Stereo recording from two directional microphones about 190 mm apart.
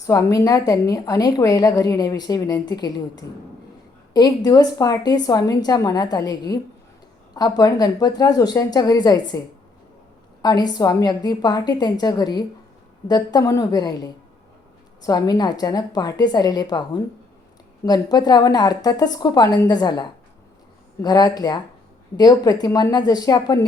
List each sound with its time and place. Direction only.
0.0 s a woman's voice: 15° left (ahead or behind)
10.4 s a woman's voice: 20° left (ahead or behind)